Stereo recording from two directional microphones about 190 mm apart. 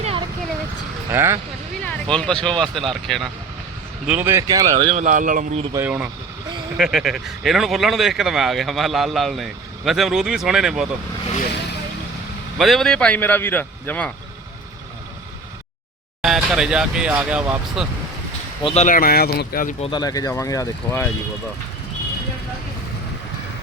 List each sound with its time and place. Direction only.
0.0 s a sound: 30° right (ahead or behind)
1.1 s speech: 10° right (ahead or behind)
1.8 s speech: 5° left (ahead or behind); by 4.7 s 20° right (ahead or behind)
4.7 s speech: 30° right (ahead or behind)
5.0 s speech: 45° right (ahead or behind)
5.7 s speech: 10° right (ahead or behind)
12.5 s speech: centre (ahead or behind)
16.2 s speech: 5° right (ahead or behind)
18.6 s speech: 35° left (ahead or behind)
19.8 s speech: 25° left (ahead or behind)